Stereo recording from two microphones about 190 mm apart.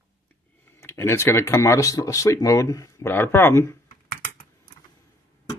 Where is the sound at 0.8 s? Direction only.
15° left (ahead or behind).